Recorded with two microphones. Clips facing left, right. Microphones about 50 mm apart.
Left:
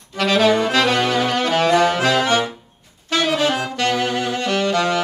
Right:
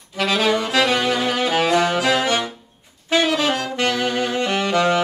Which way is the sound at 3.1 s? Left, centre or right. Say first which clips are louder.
Right 2 dB; centre.